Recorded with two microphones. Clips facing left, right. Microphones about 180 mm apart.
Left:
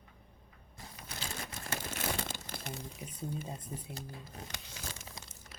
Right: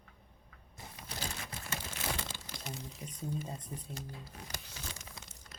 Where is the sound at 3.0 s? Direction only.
10° left (ahead or behind).